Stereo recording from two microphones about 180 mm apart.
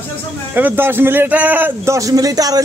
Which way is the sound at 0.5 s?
10° right (ahead or behind).